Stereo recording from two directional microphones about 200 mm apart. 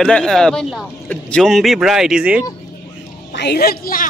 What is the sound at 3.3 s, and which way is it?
Speech, 55° left (ahead or behind).